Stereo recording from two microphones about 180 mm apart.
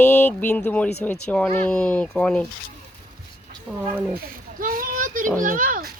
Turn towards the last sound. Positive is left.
turn(degrees=-50)  # may be behind; listen again after turning